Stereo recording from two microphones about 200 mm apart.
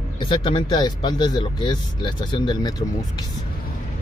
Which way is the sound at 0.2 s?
25° left (ahead or behind).